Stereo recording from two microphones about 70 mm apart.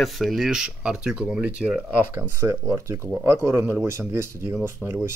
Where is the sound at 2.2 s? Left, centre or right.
Right.